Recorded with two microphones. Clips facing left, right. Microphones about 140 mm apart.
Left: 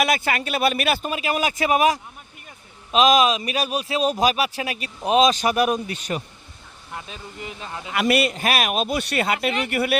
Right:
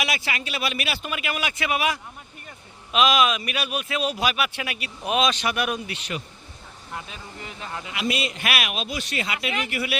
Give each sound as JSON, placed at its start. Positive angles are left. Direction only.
{"t": 0.0, "sound": "a man's voice", "side_deg": 50}
{"t": 1.1, "sound": "a man's voice", "side_deg": 40}
{"t": 7.1, "sound": "speech", "side_deg": 20}
{"t": 7.9, "sound": "a man's voice", "side_deg": 60}
{"t": 8.3, "sound": "a man's voice", "side_deg": 40}